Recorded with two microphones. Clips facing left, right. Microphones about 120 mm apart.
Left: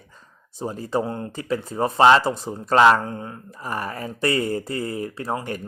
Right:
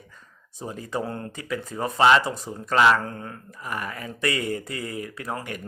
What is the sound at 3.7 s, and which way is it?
Speech, 35° left (ahead or behind).